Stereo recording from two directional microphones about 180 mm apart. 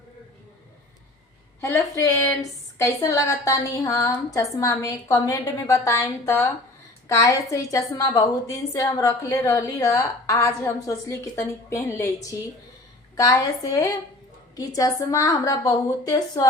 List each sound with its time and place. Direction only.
1.6 s a woman's voice: 15° left (ahead or behind)